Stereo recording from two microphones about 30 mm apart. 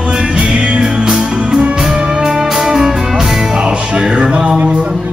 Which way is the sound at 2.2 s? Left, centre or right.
Centre.